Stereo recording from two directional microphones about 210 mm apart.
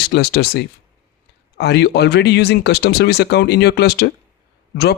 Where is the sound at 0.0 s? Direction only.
50° left (ahead or behind).